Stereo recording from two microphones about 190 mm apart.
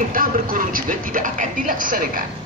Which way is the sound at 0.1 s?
50° right (ahead or behind).